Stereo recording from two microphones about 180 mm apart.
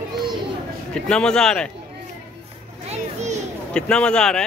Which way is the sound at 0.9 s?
5° left (ahead or behind).